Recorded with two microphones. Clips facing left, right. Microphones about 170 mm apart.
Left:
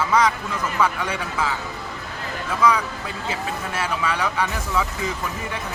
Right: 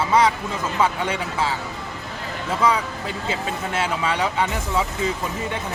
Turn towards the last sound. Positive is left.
turn(degrees=-25)  # may be behind; listen again after turning